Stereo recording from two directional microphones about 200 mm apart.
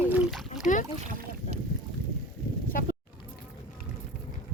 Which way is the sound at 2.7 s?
45° left (ahead or behind).